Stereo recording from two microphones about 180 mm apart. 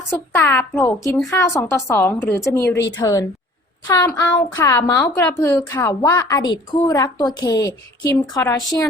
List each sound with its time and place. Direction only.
0.1 s a woman's voice: 15° left (ahead or behind)